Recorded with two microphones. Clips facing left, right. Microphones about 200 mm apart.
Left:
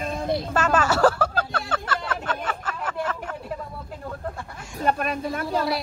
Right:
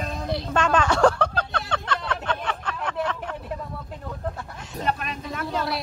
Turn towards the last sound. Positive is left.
turn(degrees=0)  # may be behind; listen again after turning